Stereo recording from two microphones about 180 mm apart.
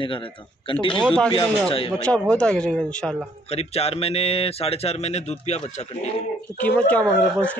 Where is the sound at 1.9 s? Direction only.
5° left (ahead or behind).